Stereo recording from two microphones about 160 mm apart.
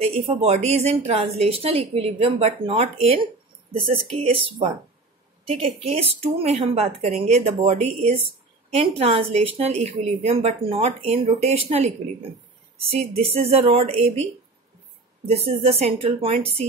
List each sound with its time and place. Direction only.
0.0 s a woman's voice: 40° right (ahead or behind)